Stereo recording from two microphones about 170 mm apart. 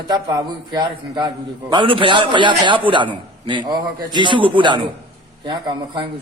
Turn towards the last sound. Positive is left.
turn(degrees=-25)  # may be behind; listen again after turning